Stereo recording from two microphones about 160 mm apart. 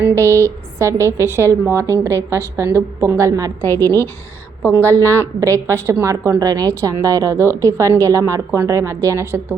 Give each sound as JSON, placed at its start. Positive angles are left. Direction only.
{"t": 0.0, "sound": "a woman's voice", "side_deg": -15}
{"t": 3.7, "sound": "a woman's voice", "side_deg": 15}
{"t": 4.8, "sound": "a woman's voice", "side_deg": -15}